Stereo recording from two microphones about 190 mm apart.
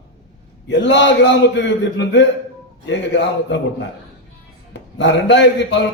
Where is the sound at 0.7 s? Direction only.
70° left (ahead or behind).